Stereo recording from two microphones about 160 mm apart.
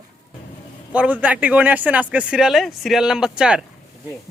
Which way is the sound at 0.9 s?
10° right (ahead or behind).